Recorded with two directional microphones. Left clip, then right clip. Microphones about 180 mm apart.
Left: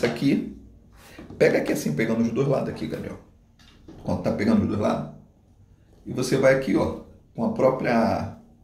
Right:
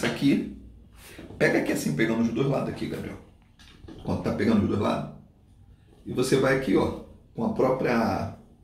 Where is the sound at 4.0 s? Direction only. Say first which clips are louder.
Left 2 dB; 30° left (ahead or behind).